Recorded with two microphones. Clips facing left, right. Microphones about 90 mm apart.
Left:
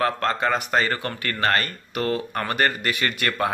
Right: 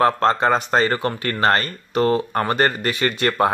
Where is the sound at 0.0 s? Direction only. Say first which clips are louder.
Right 6 dB; 30° right (ahead or behind).